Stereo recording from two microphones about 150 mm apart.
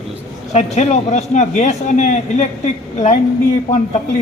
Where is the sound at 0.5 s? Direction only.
50° left (ahead or behind).